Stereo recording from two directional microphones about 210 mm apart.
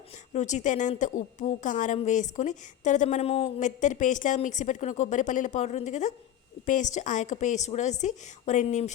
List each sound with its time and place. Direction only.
0.3 s a woman's voice: 35° left (ahead or behind)